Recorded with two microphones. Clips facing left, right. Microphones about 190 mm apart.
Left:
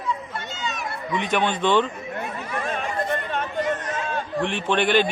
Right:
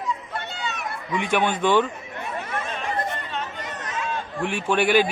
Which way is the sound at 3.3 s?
55° left (ahead or behind).